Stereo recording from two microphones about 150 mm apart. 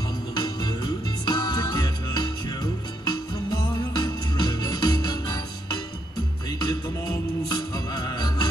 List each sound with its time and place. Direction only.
0.3 s music: 30° left (ahead or behind)
6.6 s music: 25° left (ahead or behind)